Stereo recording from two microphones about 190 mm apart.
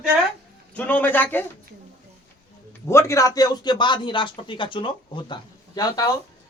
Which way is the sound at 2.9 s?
15° left (ahead or behind).